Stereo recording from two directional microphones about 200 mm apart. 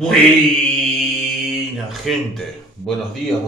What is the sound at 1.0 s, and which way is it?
Speech, centre (ahead or behind).